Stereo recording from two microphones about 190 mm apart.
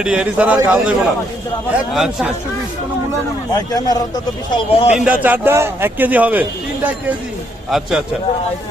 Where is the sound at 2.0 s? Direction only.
5° right (ahead or behind).